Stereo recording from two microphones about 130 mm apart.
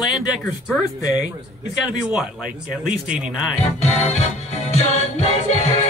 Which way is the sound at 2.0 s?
5° right (ahead or behind).